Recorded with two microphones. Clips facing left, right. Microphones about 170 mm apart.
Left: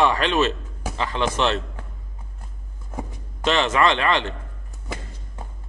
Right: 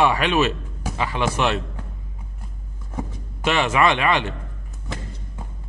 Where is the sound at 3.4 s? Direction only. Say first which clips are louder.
Even; 10° right (ahead or behind).